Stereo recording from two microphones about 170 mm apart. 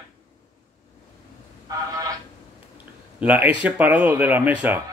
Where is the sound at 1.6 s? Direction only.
20° right (ahead or behind).